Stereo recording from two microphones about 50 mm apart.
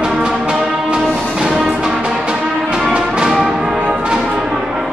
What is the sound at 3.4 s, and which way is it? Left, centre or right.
Music, centre.